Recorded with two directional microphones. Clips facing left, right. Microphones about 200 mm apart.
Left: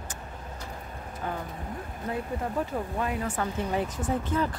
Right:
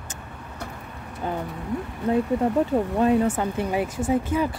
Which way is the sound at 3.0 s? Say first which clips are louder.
Right 11 dB; 30° right (ahead or behind).